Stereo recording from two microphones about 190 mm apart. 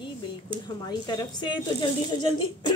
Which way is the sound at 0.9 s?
20° left (ahead or behind).